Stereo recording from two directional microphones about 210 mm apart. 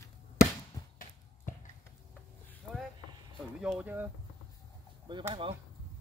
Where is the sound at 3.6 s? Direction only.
5° right (ahead or behind).